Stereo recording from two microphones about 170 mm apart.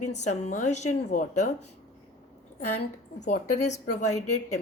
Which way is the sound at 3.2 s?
45° left (ahead or behind).